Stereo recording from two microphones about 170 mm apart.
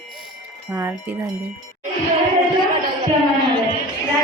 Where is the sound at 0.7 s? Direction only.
15° right (ahead or behind).